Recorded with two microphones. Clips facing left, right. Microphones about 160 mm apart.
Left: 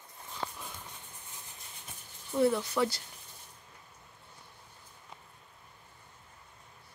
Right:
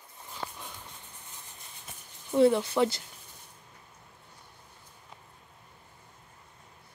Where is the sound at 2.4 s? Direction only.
25° right (ahead or behind).